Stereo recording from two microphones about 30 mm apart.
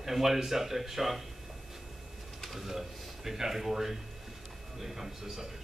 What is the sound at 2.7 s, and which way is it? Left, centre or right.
Speech, centre.